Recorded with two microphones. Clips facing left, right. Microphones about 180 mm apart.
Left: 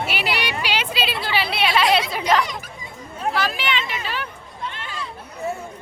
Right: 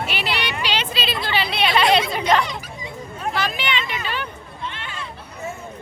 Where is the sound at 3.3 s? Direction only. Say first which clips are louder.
Even; centre (ahead or behind).